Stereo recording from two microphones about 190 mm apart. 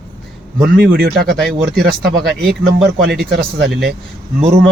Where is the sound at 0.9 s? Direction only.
55° right (ahead or behind).